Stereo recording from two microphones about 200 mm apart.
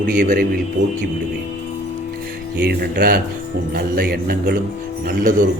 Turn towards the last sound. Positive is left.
turn(degrees=-40)  # may be behind; listen again after turning